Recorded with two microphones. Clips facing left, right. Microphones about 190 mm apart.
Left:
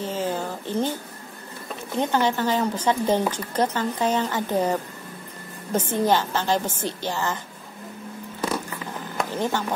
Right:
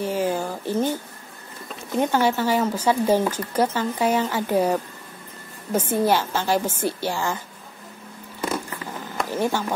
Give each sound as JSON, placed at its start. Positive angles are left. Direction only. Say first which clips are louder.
{"t": 0.0, "sound": "a sound", "louder": "right 3 dB", "side_deg": -10}
{"t": 2.0, "sound": "speech", "louder": "right 2 dB", "side_deg": -10}
{"t": 9.4, "sound": "speech", "louder": "right 2 dB", "side_deg": -10}